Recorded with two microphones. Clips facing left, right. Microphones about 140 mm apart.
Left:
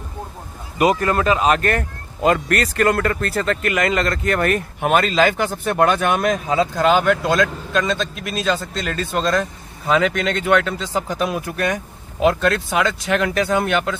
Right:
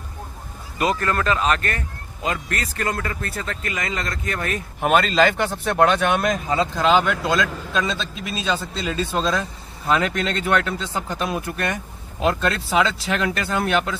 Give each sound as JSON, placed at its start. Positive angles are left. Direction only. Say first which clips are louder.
{"t": 0.7, "sound": "speech", "louder": "left 5 dB", "side_deg": 15}
{"t": 1.6, "sound": "speech", "louder": "left 7 dB", "side_deg": 55}
{"t": 4.8, "sound": "speech", "louder": "left 1 dB", "side_deg": 0}